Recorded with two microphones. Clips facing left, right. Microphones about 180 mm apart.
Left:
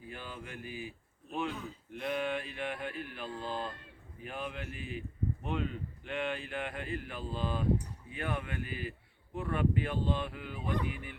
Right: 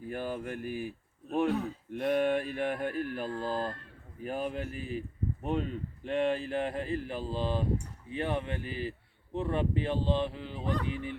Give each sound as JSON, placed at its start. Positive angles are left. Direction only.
{"t": 0.1, "sound": "a man's voice", "side_deg": -50}